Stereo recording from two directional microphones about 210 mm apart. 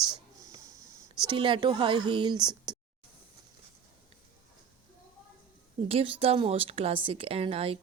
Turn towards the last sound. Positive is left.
turn(degrees=-25)  # may be behind; listen again after turning